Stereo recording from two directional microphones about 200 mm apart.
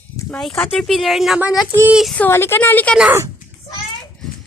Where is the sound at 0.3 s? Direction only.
5° left (ahead or behind).